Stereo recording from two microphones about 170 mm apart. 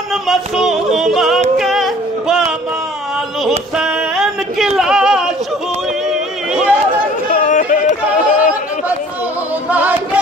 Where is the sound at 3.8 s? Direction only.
Centre (ahead or behind).